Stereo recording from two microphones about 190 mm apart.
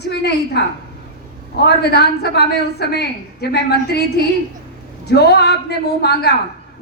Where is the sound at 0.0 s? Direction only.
60° left (ahead or behind).